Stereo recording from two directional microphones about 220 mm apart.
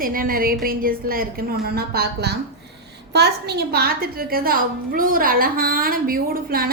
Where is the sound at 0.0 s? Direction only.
40° right (ahead or behind).